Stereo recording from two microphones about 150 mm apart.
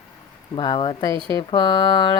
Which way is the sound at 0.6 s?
35° left (ahead or behind).